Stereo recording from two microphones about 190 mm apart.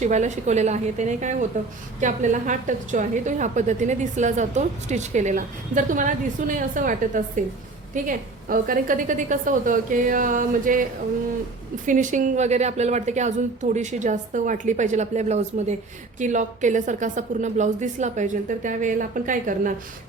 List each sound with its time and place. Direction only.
0.0 s a woman's voice: 40° right (ahead or behind)
11.9 s a woman's voice: 40° right (ahead or behind)